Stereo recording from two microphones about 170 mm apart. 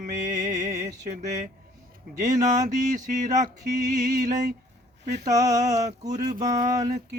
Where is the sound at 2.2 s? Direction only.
45° right (ahead or behind).